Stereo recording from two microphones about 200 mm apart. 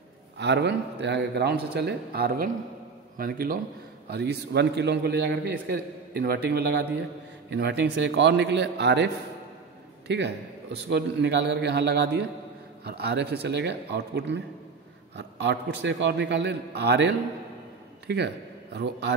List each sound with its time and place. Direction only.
0.4 s a man's voice: 60° right (ahead or behind)